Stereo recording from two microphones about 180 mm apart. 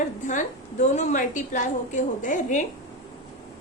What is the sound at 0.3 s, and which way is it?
A woman's voice, 45° left (ahead or behind).